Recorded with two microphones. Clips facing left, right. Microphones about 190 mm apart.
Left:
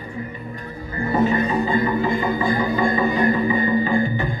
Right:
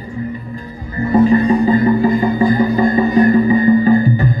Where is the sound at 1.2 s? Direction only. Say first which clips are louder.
Right 9 dB; 35° right (ahead or behind).